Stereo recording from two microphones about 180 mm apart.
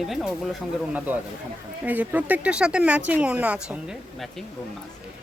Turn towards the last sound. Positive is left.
turn(degrees=-5)  # may be behind; listen again after turning